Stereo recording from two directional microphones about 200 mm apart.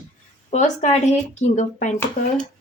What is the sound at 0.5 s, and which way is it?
Speech, 35° left (ahead or behind).